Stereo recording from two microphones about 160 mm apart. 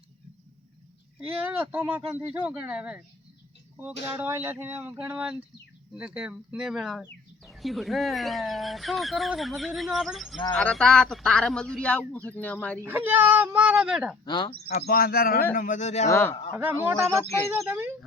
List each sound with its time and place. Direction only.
1.5 s speech: 10° right (ahead or behind)
4.0 s speech: 15° right (ahead or behind); by 12.5 s 10° left (ahead or behind)
12.8 s speech: 15° right (ahead or behind)
14.3 s speech: 30° left (ahead or behind)
14.7 s speech: 80° left
15.5 s speech: 55° left (ahead or behind)
16.0 s speech: 15° left (ahead or behind)
16.6 s speech: 15° right (ahead or behind)